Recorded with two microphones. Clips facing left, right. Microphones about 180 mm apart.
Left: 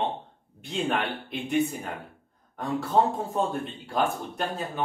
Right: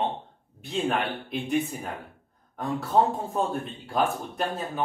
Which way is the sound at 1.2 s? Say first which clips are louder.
Left 1 dB; centre (ahead or behind).